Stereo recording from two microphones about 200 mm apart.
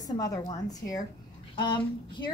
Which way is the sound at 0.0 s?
20° left (ahead or behind).